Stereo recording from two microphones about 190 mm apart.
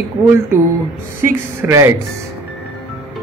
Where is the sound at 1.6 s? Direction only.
15° right (ahead or behind).